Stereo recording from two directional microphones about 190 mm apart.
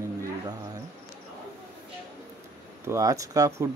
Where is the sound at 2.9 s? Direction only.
15° right (ahead or behind).